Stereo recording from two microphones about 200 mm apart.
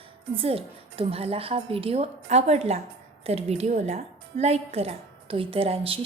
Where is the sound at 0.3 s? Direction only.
30° right (ahead or behind).